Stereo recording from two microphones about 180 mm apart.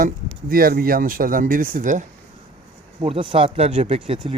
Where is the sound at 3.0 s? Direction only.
30° right (ahead or behind).